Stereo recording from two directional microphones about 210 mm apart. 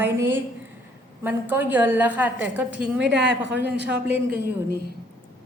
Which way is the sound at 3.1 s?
55° right (ahead or behind).